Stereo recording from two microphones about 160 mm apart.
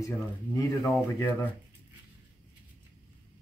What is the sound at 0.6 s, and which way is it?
Speech, 20° left (ahead or behind).